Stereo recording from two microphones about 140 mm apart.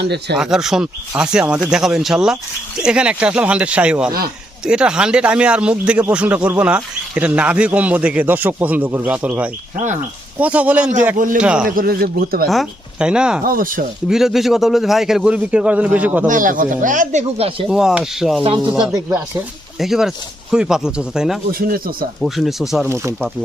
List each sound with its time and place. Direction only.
0.3 s a man's voice: 5° right (ahead or behind)
11.8 s speech: 90° right
12.5 s speech: 5° right (ahead or behind)
13.4 s speech: 90° right
14.1 s a man's voice: 5° right (ahead or behind)
16.2 s speech: 70° right (ahead or behind); by 17.7 s 45° right (ahead or behind)
17.7 s a man's voice: 5° right (ahead or behind)
19.8 s a man's voice: 5° right (ahead or behind)
21.6 s speech: 90° right
22.2 s a man's voice: centre (ahead or behind)